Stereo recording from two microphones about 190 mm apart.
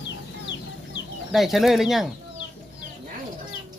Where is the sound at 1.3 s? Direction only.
Centre (ahead or behind).